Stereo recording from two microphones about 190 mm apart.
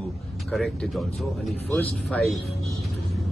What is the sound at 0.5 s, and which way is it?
Speech, centre (ahead or behind).